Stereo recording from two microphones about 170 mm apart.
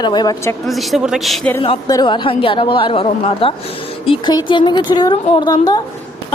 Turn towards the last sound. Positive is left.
turn(degrees=25)  # may be behind; listen again after turning